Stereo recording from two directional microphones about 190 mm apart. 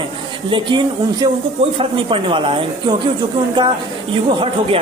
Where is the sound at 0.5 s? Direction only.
25° right (ahead or behind).